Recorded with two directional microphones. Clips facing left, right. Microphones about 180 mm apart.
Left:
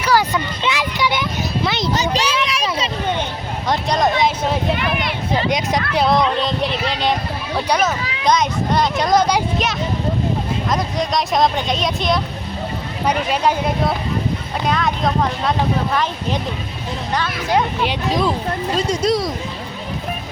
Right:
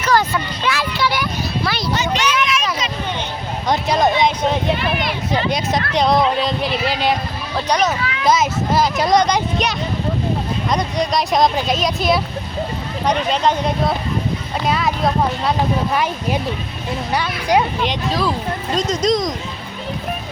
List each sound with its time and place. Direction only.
0.0 s a sound: 10° left (ahead or behind)
2.0 s a sound: 30° left (ahead or behind)
3.7 s speech: centre (ahead or behind)
5.5 s speech: 15° left (ahead or behind); by 7.2 s 5° right (ahead or behind)
7.5 s speech: 5° left (ahead or behind)
8.2 s speech: 5° right (ahead or behind)
13.1 s speech: 10° left (ahead or behind)
17.1 s speech: 10° right (ahead or behind)
17.8 s speech: 15° left (ahead or behind)